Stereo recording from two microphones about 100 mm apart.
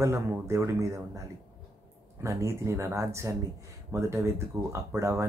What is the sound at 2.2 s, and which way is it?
Speech, 30° right (ahead or behind).